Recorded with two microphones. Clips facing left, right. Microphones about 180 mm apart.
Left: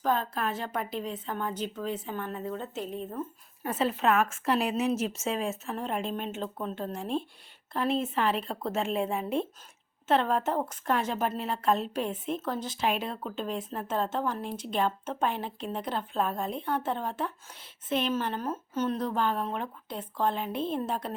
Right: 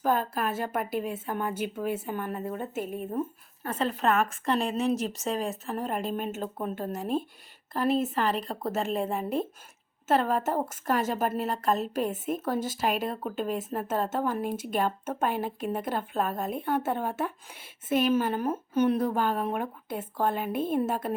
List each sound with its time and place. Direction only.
0.0 s speech: 5° right (ahead or behind)
3.6 s speech: 10° left (ahead or behind)
20.5 s a woman's voice: 50° right (ahead or behind)
20.7 s speech: 5° right (ahead or behind)